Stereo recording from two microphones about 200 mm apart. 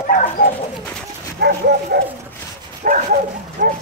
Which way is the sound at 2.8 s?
45° right (ahead or behind).